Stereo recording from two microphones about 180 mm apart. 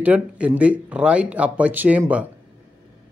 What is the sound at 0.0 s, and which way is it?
Speech, 10° right (ahead or behind).